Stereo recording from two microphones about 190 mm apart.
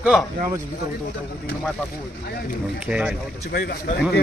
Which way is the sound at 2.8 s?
5° right (ahead or behind).